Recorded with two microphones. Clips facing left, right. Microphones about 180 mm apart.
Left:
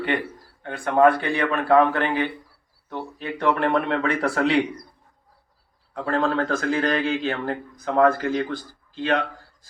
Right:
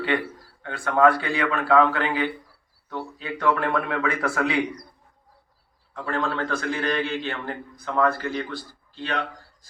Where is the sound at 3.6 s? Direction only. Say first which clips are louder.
Left 3 dB; 25° left (ahead or behind).